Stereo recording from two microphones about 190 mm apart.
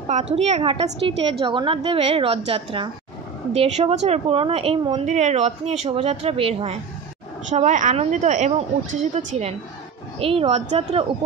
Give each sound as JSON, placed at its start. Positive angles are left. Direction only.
{"t": 0.1, "sound": "a woman's voice", "side_deg": -35}